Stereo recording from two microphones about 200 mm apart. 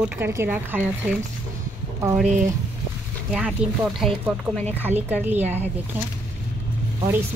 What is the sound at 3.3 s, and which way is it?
A woman's voice, centre (ahead or behind).